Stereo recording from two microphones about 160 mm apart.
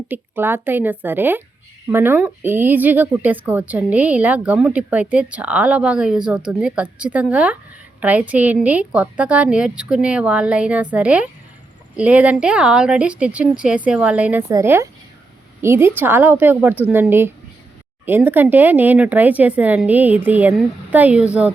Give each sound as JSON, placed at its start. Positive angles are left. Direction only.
{"t": 0.1, "sound": "speech", "side_deg": -15}